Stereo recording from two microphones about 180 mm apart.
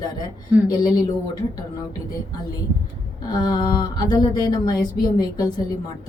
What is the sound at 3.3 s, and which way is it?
Speech, 20° left (ahead or behind).